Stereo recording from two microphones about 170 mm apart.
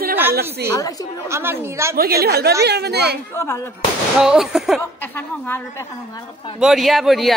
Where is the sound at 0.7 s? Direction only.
20° left (ahead or behind).